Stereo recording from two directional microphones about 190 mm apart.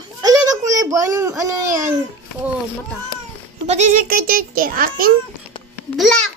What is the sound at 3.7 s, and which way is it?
A child's voice, 40° right (ahead or behind).